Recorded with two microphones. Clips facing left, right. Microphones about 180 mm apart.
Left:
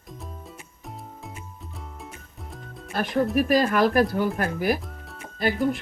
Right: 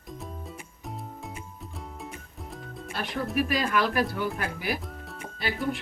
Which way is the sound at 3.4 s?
45° left (ahead or behind).